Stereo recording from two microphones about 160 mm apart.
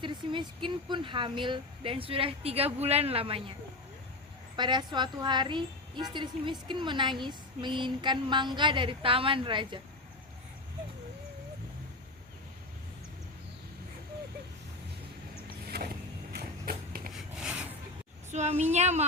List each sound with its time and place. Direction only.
0.0 s speech: 30° right (ahead or behind)
4.5 s a woman's voice: 30° right (ahead or behind)
16.3 s a sound: 75° right (ahead or behind)
17.4 s rub: 10° right (ahead or behind)
18.3 s a woman's voice: 45° right (ahead or behind)